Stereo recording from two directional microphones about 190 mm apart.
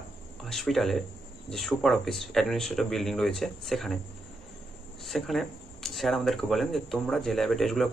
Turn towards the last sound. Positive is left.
turn(degrees=0)  # may be behind; listen again after turning